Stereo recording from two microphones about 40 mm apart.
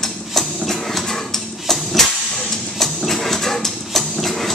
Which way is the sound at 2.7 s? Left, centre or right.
Centre.